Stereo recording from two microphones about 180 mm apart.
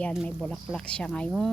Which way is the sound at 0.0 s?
5° left (ahead or behind).